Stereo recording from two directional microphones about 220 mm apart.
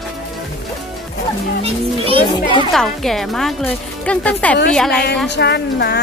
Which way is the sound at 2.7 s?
Centre (ahead or behind).